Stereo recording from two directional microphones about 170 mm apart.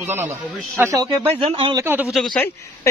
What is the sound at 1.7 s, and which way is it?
Speech, 15° right (ahead or behind).